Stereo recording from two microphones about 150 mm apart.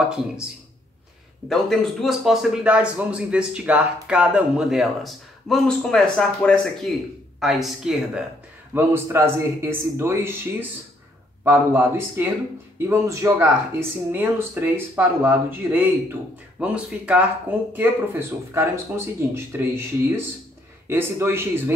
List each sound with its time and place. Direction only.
1.5 s a man's voice: centre (ahead or behind)
8.7 s speech: 15° right (ahead or behind)